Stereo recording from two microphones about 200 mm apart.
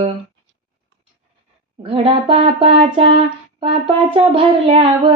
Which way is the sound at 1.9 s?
30° right (ahead or behind).